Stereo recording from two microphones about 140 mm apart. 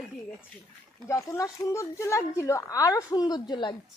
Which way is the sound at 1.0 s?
20° left (ahead or behind).